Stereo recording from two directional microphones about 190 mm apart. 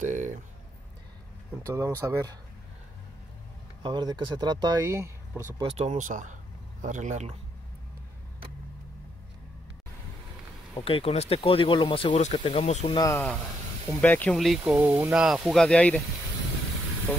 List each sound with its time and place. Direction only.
0.0 s a sound: 40° right (ahead or behind)
1.7 s speech: 15° right (ahead or behind)
3.8 s speech: 20° right (ahead or behind)
5.6 s speech: 35° right (ahead or behind)
10.8 s speech: 30° left (ahead or behind)
12.8 s speech: 25° left (ahead or behind)
13.1 s speech: 5° left (ahead or behind)